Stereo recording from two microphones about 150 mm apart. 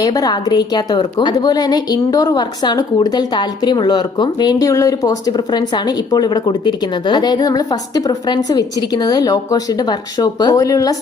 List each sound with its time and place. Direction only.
0.0 s a woman's voice: 25° left (ahead or behind)